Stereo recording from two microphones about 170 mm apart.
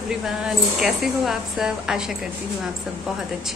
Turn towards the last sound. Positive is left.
turn(degrees=0)  # may be behind; listen again after turning